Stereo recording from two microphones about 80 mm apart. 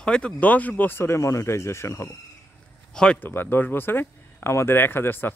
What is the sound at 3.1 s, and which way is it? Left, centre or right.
Speech, left.